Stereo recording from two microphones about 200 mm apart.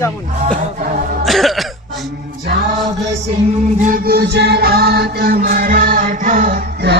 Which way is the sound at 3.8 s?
45° right (ahead or behind).